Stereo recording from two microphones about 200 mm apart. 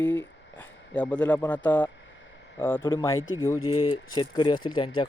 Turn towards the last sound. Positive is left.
turn(degrees=25)  # may be behind; listen again after turning